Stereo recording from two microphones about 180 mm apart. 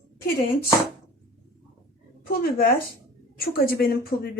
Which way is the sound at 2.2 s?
55° left (ahead or behind).